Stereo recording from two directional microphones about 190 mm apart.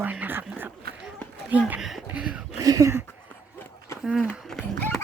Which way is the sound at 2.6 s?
20° right (ahead or behind).